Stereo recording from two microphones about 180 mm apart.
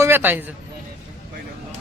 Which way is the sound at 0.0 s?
10° right (ahead or behind).